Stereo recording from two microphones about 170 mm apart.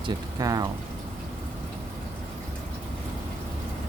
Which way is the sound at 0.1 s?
20° right (ahead or behind).